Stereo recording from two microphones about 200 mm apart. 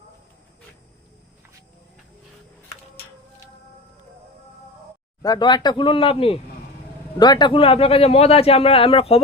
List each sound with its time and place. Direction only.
5.2 s speech: 20° left (ahead or behind)